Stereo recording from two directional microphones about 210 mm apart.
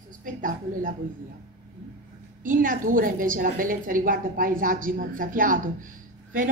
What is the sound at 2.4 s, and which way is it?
A woman's voice, 40° right (ahead or behind).